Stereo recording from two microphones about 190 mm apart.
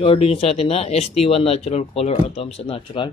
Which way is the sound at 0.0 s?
30° left (ahead or behind).